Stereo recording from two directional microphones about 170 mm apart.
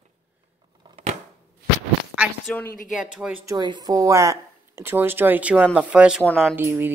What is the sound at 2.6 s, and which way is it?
Speech, 55° left (ahead or behind).